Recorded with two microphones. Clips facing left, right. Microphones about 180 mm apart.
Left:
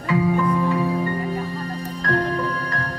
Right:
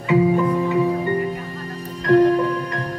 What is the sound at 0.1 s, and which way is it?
Music, 15° right (ahead or behind).